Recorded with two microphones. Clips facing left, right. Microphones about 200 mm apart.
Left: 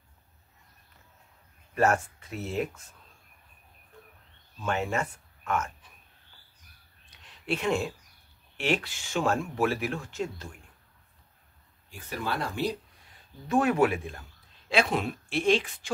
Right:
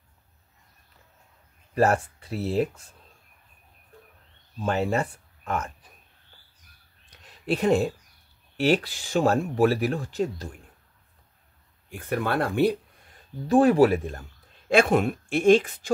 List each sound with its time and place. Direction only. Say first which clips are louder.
1.8 s speech: right 3 dB; 35° right (ahead or behind)
4.6 s speech: right 5 dB; 35° right (ahead or behind)
7.1 s a sound: right 5 dB; 40° right (ahead or behind)
8.5 s speech: right 6 dB; 35° right (ahead or behind)
11.9 s speech: right 7 dB; 60° right (ahead or behind)
13.5 s speech: right 6 dB; 35° right (ahead or behind)